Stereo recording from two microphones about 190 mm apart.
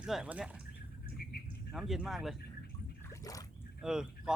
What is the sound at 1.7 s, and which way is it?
Speech, centre (ahead or behind).